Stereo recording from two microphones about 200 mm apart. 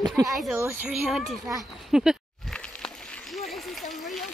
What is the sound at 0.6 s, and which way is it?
Speech, 10° right (ahead or behind).